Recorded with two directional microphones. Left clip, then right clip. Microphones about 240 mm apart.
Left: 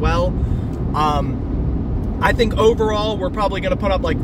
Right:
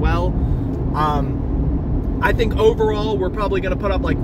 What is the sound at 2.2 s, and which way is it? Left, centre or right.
Speech, centre.